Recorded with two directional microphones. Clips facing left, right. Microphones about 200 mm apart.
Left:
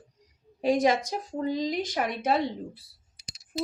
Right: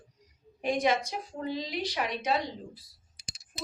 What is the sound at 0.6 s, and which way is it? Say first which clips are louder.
A woman's voice: left 4 dB; 35° left (ahead or behind).